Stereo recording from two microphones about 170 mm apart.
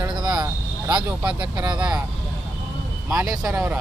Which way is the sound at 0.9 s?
5° right (ahead or behind).